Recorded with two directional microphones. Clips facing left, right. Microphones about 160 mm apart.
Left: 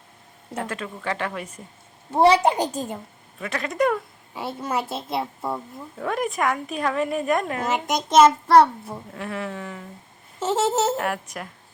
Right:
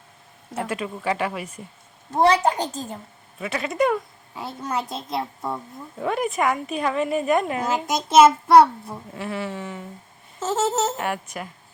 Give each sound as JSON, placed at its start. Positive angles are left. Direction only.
{"t": 0.5, "sound": "speech", "side_deg": -10}
{"t": 2.1, "sound": "a child's voice", "side_deg": 10}
{"t": 3.4, "sound": "a woman's voice", "side_deg": -5}
{"t": 10.9, "sound": "a woman's voice", "side_deg": 0}